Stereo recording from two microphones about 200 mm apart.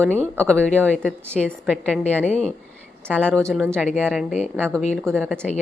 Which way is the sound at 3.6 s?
10° right (ahead or behind).